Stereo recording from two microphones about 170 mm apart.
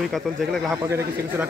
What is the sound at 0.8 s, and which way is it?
Speech, 15° right (ahead or behind).